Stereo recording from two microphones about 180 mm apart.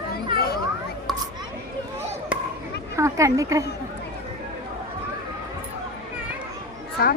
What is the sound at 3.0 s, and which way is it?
Speech, 15° right (ahead or behind).